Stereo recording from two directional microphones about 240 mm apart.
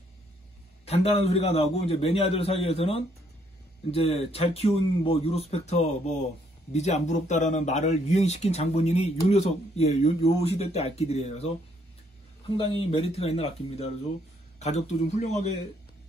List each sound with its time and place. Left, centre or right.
0.8 s speech: left
12.5 s speech: left